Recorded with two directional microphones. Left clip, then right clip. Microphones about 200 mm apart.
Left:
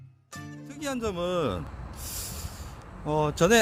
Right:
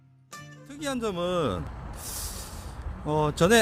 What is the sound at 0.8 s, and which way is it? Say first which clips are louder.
Speech: right 1 dB; 5° left (ahead or behind).